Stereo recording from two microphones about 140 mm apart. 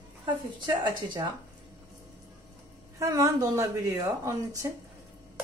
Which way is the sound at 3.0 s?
20° right (ahead or behind).